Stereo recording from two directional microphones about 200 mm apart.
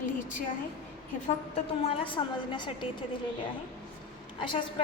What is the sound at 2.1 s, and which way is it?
Speech, 25° left (ahead or behind).